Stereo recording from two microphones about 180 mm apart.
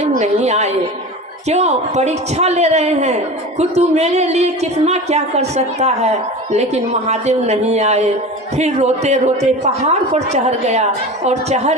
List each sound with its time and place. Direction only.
0.0 s a woman's voice: 40° right (ahead or behind)
7.1 s a woman's voice: 35° right (ahead or behind)